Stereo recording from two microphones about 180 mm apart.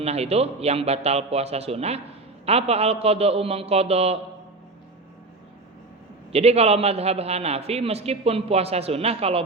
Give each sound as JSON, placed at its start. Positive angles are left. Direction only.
{"t": 0.0, "sound": "a man's voice", "side_deg": -35}
{"t": 6.3, "sound": "a man's voice", "side_deg": -35}